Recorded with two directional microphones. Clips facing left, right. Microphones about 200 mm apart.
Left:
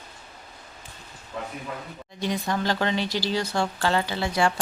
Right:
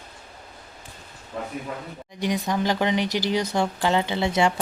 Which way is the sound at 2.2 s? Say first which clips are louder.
Right 2 dB; 15° right (ahead or behind).